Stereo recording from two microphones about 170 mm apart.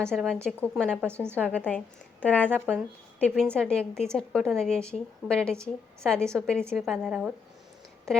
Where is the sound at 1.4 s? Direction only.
10° left (ahead or behind).